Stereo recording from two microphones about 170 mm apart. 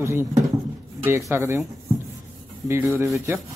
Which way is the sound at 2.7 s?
15° right (ahead or behind).